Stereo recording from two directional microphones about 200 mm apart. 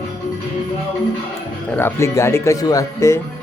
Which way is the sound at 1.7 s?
10° left (ahead or behind).